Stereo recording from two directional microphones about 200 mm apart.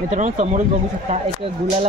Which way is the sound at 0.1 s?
35° right (ahead or behind).